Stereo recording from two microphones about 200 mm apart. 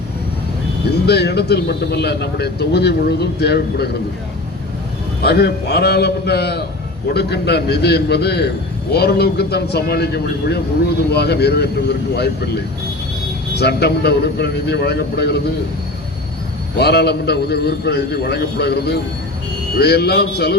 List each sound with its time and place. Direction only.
1.0 s speech: 55° left (ahead or behind)
5.2 s a man's voice: 55° left (ahead or behind)
13.6 s speech: 55° left (ahead or behind)
16.7 s a man's voice: 55° left (ahead or behind)